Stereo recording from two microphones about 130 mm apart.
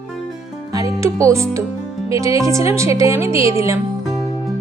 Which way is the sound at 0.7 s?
25° right (ahead or behind).